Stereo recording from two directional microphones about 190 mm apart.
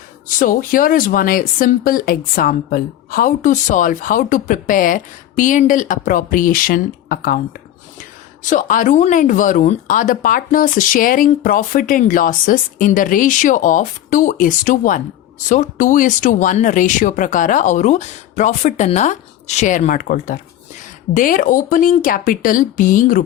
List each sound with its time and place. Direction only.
0.3 s speech: 45° left (ahead or behind)
8.4 s speech: 40° left (ahead or behind)